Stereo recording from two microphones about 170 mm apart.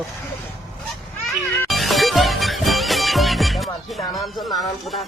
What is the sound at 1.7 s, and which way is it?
Music, centre (ahead or behind).